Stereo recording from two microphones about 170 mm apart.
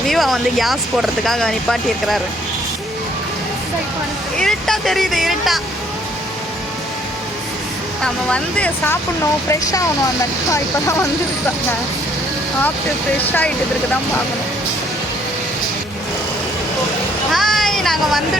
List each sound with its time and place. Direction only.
0.1 s speech: centre (ahead or behind)
4.4 s speech: 5° left (ahead or behind)
8.0 s speech: 5° left (ahead or behind)
10.5 s speech: 20° left (ahead or behind)
17.3 s speech: centre (ahead or behind)